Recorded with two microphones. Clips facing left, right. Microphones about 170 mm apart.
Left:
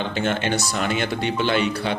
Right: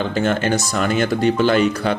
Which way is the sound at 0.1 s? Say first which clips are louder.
Right 4 dB; 40° right (ahead or behind).